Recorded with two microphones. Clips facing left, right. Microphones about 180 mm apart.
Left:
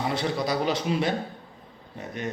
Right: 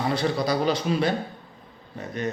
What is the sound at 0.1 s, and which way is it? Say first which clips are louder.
A man's voice: right 3 dB; 20° left (ahead or behind).